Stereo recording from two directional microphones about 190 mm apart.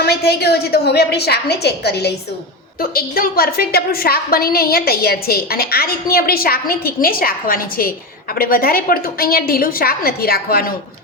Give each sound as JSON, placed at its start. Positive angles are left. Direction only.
{"t": 0.0, "sound": "a woman's voice", "side_deg": 55}